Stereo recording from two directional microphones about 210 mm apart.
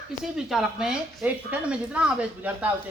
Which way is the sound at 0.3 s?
5° right (ahead or behind).